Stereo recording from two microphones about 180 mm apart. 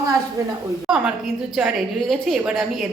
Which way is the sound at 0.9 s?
5° right (ahead or behind).